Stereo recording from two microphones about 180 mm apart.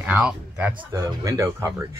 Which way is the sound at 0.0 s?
5° right (ahead or behind).